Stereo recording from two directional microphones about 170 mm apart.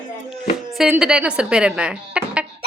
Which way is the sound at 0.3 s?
Centre (ahead or behind).